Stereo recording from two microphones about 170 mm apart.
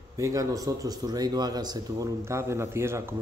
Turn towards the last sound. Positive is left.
turn(degrees=-15)  # may be behind; listen again after turning